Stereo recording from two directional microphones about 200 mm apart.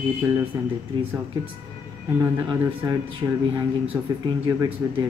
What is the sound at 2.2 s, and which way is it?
Speech, 10° right (ahead or behind).